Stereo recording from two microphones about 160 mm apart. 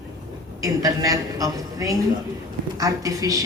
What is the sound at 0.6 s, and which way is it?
A man's voice, 20° right (ahead or behind).